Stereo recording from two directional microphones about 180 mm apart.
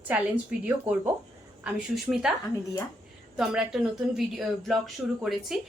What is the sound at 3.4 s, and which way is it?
A woman's voice, 5° right (ahead or behind).